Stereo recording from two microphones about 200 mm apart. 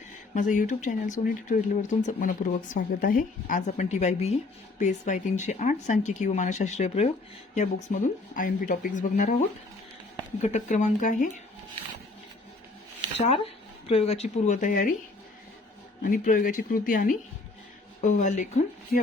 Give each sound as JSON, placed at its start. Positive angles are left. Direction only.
{"t": 0.3, "sound": "speech", "side_deg": 40}
{"t": 10.4, "sound": "speech", "side_deg": 35}
{"t": 13.2, "sound": "speech", "side_deg": 30}
{"t": 16.0, "sound": "speech", "side_deg": 45}